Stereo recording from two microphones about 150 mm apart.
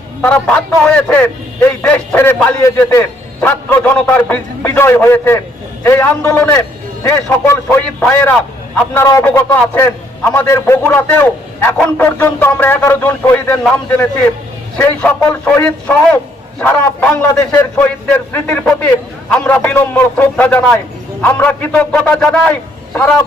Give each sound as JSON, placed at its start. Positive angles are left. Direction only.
{"t": 0.2, "sound": "a man's voice", "side_deg": 10}